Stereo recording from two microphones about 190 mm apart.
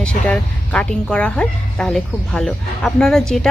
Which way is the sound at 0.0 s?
5° left (ahead or behind).